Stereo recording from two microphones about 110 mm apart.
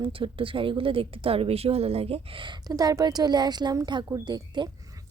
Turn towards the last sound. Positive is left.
turn(degrees=-45)  # may be behind; listen again after turning